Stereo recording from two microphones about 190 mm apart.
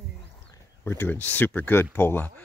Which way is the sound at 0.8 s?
10° left (ahead or behind).